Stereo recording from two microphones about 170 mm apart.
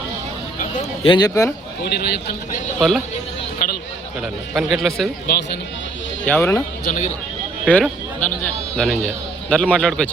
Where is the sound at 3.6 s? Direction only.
55° left (ahead or behind).